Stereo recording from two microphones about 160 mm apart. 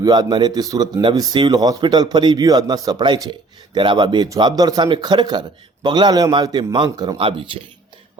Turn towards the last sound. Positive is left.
turn(degrees=-35)  # may be behind; listen again after turning